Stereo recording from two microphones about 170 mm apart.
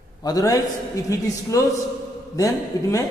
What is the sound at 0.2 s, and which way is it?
A man's voice, 20° left (ahead or behind).